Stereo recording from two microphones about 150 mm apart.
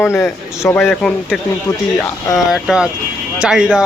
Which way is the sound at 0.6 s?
15° left (ahead or behind).